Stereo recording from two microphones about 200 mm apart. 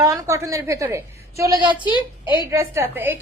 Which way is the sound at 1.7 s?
25° left (ahead or behind).